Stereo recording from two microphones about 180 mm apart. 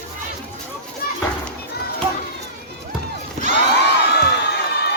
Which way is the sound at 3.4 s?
40° right (ahead or behind).